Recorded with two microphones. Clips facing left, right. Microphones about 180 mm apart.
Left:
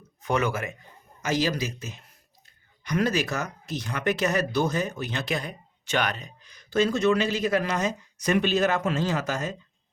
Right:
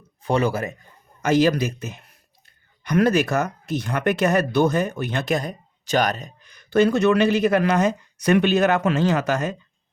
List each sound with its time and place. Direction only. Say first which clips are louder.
0.2 s a man's voice: right 5 dB; 30° right (ahead or behind)
1.2 s speech: right 8 dB; 55° right (ahead or behind)